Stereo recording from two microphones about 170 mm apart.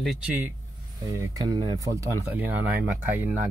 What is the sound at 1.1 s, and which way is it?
Speech, 20° right (ahead or behind).